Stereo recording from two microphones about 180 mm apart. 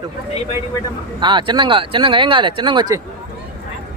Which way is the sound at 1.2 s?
25° right (ahead or behind).